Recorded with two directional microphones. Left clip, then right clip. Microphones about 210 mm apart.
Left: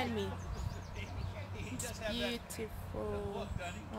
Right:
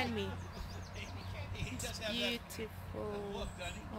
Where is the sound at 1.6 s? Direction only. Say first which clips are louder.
Right 1 dB; 35° right (ahead or behind).